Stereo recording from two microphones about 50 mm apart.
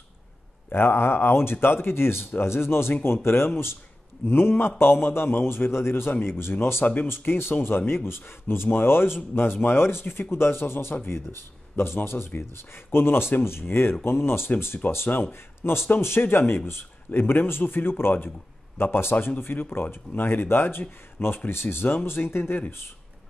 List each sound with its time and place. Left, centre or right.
0.7 s speech: left